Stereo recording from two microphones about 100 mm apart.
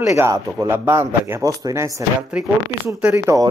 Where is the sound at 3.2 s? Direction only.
30° right (ahead or behind).